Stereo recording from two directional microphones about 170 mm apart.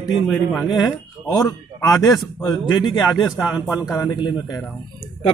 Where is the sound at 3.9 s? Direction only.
15° left (ahead or behind).